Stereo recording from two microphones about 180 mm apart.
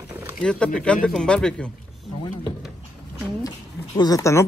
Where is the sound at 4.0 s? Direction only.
20° left (ahead or behind).